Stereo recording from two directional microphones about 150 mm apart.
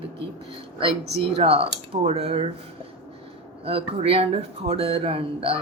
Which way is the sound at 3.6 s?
40° right (ahead or behind).